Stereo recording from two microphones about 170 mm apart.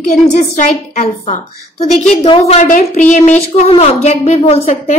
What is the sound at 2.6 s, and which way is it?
A woman's voice, 50° left (ahead or behind).